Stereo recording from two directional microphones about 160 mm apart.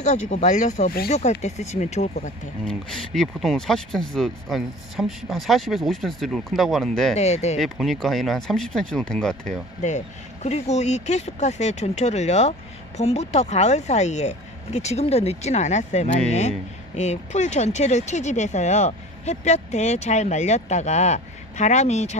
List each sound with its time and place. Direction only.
0.0 s speech: 45° left (ahead or behind)
2.6 s speech: 5° left (ahead or behind)
7.2 s speech: 45° left (ahead or behind)
7.5 s speech: centre (ahead or behind)
9.8 s speech: 45° left (ahead or behind)